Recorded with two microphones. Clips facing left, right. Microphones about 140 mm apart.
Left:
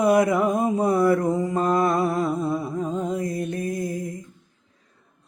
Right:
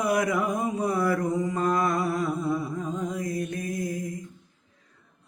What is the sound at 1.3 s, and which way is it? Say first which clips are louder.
Music: left 3 dB; 30° left (ahead or behind).